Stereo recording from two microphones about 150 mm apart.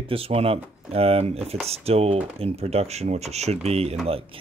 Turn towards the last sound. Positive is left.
turn(degrees=-40)  # may be behind; listen again after turning